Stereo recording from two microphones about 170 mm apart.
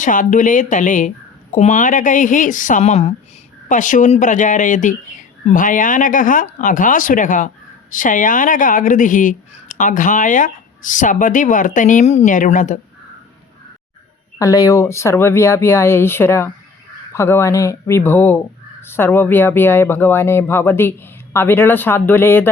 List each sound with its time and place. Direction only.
0.0 s speech: 50° left (ahead or behind)
14.3 s speech: 20° left (ahead or behind)